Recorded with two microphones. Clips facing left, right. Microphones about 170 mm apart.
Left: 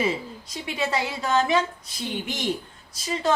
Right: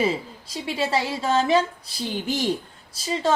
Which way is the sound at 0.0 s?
30° right (ahead or behind).